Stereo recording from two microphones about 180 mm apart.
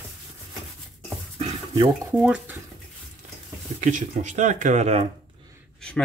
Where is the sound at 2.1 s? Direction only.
5° right (ahead or behind).